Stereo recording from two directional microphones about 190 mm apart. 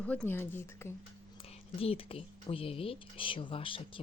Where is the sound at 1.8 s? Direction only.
30° left (ahead or behind).